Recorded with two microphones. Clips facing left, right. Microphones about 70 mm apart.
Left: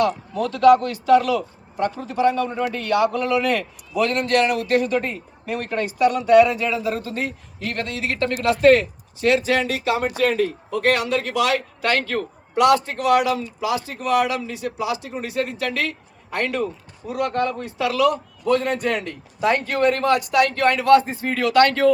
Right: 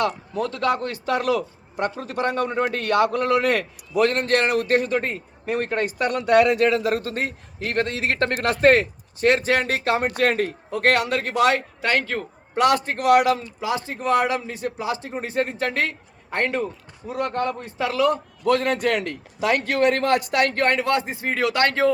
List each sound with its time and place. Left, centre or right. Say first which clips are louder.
0.0 s a man's voice: left 3 dB; right
11.8 s speech: left 1 dB; right
12.5 s a man's voice: left 3 dB; right
13.6 s a man's voice: left 2 dB; right
18.4 s a man's voice: even; right
20.7 s speech: left 6 dB; right